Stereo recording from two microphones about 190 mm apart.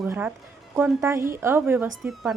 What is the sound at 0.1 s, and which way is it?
Speech, 10° right (ahead or behind).